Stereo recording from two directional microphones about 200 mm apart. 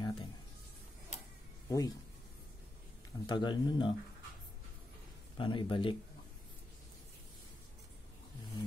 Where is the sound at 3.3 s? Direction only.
20° left (ahead or behind).